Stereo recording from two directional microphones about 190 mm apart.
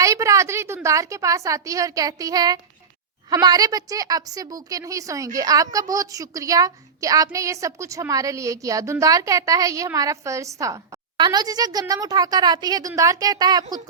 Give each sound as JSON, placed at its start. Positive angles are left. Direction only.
{"t": 0.0, "sound": "a woman's voice", "side_deg": -15}